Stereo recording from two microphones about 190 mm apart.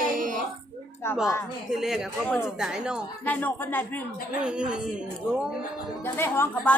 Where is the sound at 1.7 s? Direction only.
Centre (ahead or behind).